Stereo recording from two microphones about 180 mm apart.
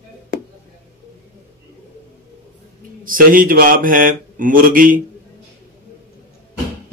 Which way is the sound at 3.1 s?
50° right (ahead or behind).